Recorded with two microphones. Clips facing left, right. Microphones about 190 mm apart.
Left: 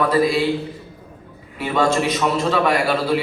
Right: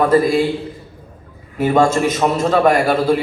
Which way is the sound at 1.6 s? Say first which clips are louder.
Right 5 dB; 45° right (ahead or behind).